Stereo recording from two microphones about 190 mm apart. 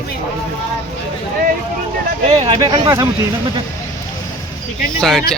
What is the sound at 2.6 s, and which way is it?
Speech, 25° right (ahead or behind).